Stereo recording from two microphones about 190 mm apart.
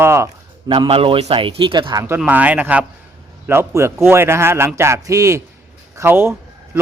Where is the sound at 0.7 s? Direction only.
25° right (ahead or behind).